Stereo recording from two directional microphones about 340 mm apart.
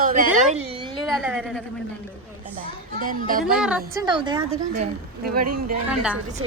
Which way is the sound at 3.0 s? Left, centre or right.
Right.